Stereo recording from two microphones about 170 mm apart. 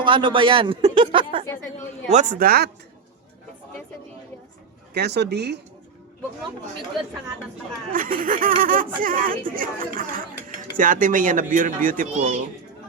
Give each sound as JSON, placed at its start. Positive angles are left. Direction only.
{"t": 0.0, "sound": "a man's voice", "side_deg": -30}
{"t": 2.0, "sound": "speech", "side_deg": -45}
{"t": 4.9, "sound": "speech", "side_deg": -80}
{"t": 7.9, "sound": "speech", "side_deg": -55}